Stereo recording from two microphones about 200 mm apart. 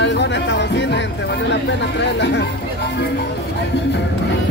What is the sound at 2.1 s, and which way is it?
Speech, 60° left (ahead or behind).